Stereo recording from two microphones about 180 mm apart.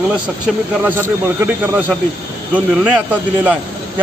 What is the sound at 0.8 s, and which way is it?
A man's voice, 10° right (ahead or behind).